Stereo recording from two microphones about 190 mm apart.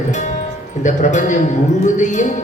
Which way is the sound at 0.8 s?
40° left (ahead or behind).